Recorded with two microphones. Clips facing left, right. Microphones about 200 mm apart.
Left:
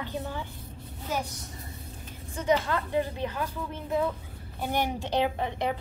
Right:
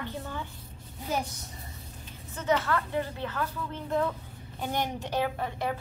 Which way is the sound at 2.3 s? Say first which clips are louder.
Left 1 dB; 15° left (ahead or behind).